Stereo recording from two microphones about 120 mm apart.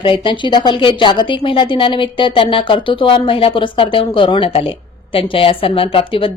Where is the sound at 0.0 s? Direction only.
45° left (ahead or behind).